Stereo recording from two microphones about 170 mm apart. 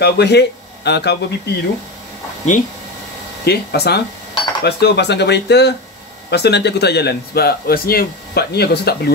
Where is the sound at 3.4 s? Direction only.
70° left (ahead or behind).